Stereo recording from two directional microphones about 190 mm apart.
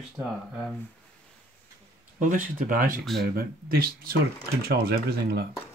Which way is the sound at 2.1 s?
40° right (ahead or behind).